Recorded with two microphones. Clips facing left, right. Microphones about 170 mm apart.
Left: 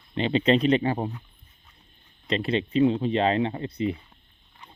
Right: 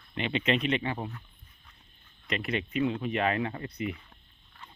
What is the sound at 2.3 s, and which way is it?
Speech, 30° left (ahead or behind).